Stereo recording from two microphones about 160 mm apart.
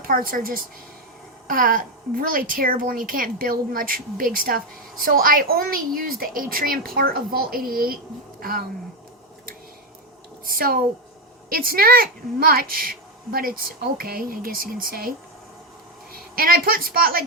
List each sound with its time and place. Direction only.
0.1 s a woman's voice: 60° right (ahead or behind)
10.4 s a woman's voice: 65° right (ahead or behind)
16.1 s a woman's voice: 65° right (ahead or behind)